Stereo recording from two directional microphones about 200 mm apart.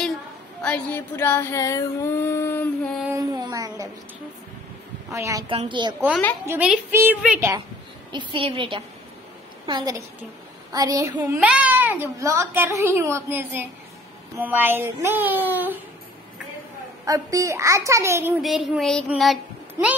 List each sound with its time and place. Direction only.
0.6 s a sound: 5° left (ahead or behind)
3.2 s speech: 20° right (ahead or behind)
5.1 s a child's voice: 15° right (ahead or behind)
5.5 s a woman's voice: 25° right (ahead or behind)
6.4 s a child's voice: 10° right (ahead or behind)
8.1 s a woman's voice: 25° right (ahead or behind)
17.0 s a child's voice: 15° right (ahead or behind)
18.4 s child singing: centre (ahead or behind)